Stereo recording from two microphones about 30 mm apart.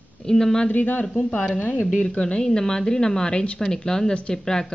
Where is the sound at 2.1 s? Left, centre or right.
Left.